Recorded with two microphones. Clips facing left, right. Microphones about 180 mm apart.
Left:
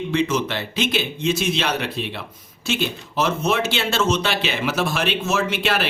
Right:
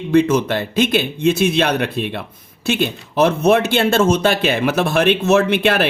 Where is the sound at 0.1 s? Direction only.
55° right (ahead or behind).